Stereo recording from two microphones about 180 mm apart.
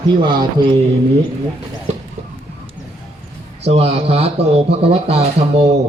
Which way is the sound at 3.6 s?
35° right (ahead or behind).